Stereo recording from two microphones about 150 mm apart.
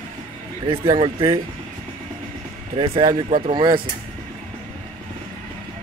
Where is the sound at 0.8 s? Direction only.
35° right (ahead or behind).